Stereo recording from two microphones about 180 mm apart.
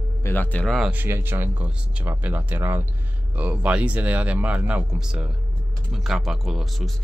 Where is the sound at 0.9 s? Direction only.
10° right (ahead or behind).